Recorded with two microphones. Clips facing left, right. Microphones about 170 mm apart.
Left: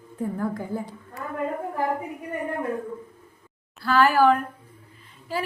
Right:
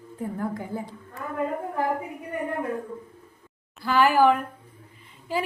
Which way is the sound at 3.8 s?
15° right (ahead or behind).